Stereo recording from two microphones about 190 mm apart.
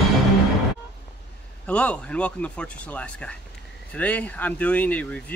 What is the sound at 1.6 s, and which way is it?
A man's voice, 5° left (ahead or behind).